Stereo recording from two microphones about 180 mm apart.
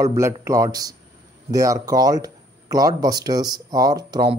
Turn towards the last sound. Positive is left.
turn(degrees=-20)  # may be behind; listen again after turning